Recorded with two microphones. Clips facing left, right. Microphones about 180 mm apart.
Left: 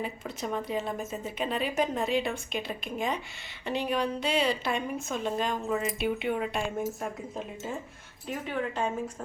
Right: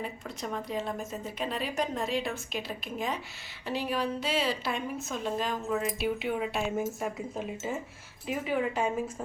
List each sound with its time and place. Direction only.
0.0 s a woman's voice: centre (ahead or behind)